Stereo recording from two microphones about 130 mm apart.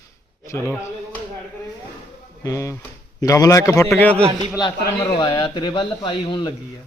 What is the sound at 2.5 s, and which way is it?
A man's voice, 25° left (ahead or behind).